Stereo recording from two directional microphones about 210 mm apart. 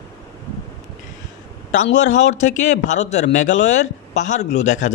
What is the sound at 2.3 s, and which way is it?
A man's voice, 35° left (ahead or behind).